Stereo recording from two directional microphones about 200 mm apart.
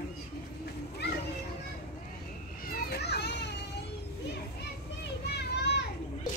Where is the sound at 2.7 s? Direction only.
55° left (ahead or behind).